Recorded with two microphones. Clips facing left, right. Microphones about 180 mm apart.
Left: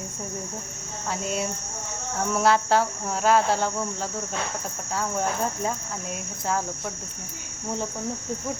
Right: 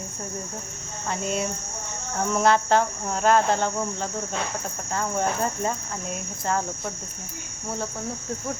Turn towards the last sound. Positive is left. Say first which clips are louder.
# right 1 dB
turn(degrees=5)  # may be behind; listen again after turning